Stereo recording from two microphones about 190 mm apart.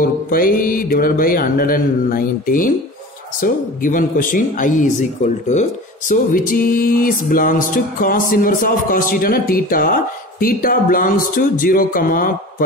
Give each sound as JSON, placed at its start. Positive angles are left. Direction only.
{"t": 0.0, "sound": "speech", "side_deg": 50}